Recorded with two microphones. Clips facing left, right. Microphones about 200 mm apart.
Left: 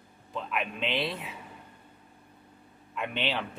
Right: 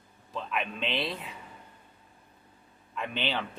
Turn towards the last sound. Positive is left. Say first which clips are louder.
# left 1 dB
turn(degrees=0)  # may be behind; listen again after turning